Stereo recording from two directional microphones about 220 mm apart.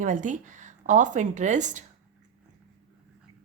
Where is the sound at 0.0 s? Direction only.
35° right (ahead or behind).